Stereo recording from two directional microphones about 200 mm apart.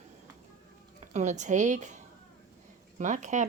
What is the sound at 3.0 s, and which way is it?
Speech, 35° right (ahead or behind).